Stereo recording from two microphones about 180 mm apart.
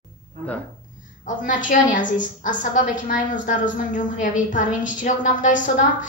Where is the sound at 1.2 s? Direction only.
45° left (ahead or behind).